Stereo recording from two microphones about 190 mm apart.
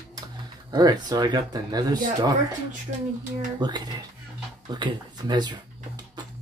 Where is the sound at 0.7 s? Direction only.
20° right (ahead or behind).